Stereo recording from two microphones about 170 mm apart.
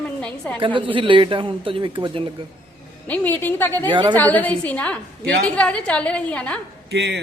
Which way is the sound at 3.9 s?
25° right (ahead or behind).